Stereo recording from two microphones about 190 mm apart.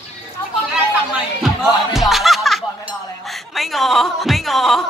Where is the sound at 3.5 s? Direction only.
Centre (ahead or behind).